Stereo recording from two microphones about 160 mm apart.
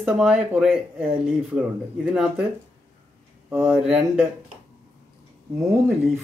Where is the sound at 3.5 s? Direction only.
10° right (ahead or behind).